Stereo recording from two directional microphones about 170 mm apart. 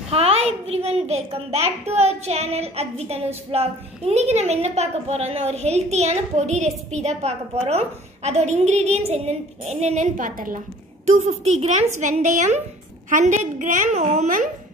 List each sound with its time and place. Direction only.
0.1 s a child's voice: 35° right (ahead or behind)